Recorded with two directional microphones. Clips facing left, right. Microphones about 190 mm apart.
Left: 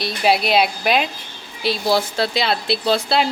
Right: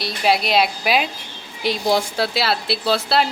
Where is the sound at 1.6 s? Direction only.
15° right (ahead or behind).